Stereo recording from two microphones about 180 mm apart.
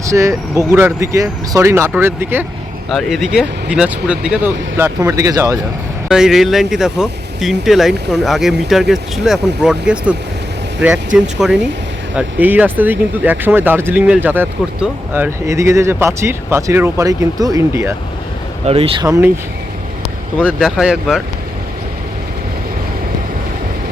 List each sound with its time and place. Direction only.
0.0 s speech: 15° right (ahead or behind)
2.9 s speech: centre (ahead or behind); by 5.5 s 20° right (ahead or behind)
6.1 s speech: 5° right (ahead or behind)
18.6 s speech: 30° right (ahead or behind)
19.0 s speech: 15° right (ahead or behind)
20.4 s speech: centre (ahead or behind)